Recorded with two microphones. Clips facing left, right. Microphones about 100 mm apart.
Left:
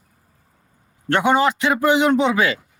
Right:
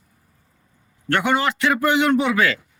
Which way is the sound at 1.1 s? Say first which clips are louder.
Left 3 dB; 20° left (ahead or behind).